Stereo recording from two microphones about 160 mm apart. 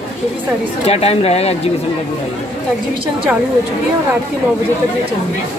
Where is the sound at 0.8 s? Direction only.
40° left (ahead or behind).